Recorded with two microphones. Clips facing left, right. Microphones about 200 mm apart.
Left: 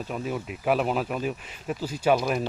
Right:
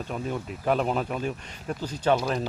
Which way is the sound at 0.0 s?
5° left (ahead or behind).